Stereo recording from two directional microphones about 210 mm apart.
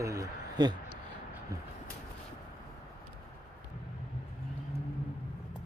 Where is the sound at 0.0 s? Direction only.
15° right (ahead or behind).